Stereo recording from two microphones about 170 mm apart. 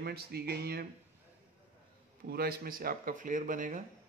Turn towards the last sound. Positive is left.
turn(degrees=-50)  # may be behind; listen again after turning